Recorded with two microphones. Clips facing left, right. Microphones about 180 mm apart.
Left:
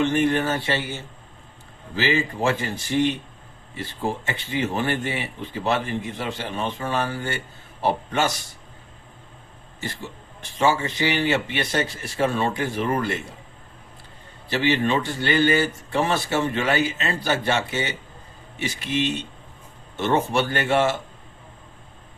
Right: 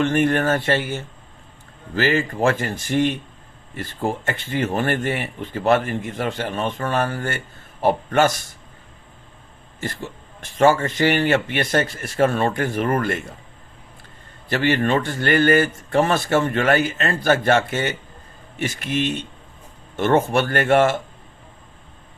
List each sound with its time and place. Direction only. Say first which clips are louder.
0.0 s speech: right 2 dB; 50° right (ahead or behind)
4.3 s speech: right 3 dB; 50° right (ahead or behind)
10.6 s speech: right 5 dB; 50° right (ahead or behind)
14.5 s speech: right 2 dB; 50° right (ahead or behind)